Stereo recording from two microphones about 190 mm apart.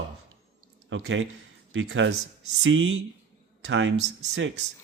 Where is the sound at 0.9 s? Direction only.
85° right.